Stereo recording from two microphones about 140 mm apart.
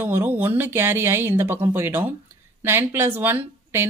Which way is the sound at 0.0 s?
15° right (ahead or behind).